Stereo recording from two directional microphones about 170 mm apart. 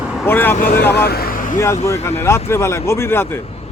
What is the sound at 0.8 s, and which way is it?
Speech, 70° left (ahead or behind).